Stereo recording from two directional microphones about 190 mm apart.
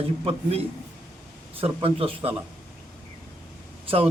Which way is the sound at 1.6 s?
30° right (ahead or behind).